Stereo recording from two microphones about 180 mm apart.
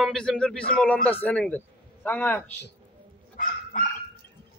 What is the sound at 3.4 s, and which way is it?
Dog, 50° left (ahead or behind).